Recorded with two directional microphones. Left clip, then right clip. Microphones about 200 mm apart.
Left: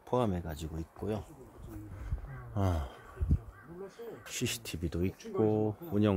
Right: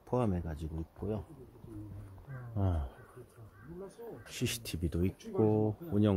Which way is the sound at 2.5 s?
20° left (ahead or behind).